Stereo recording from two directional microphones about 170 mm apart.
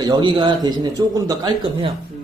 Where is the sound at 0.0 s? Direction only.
25° right (ahead or behind).